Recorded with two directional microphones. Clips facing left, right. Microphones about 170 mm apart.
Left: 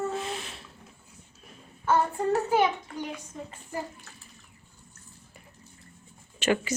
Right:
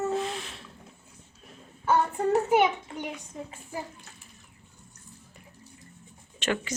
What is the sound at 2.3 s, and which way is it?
Speech, 20° right (ahead or behind).